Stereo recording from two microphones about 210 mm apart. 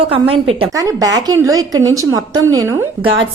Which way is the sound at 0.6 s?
15° right (ahead or behind).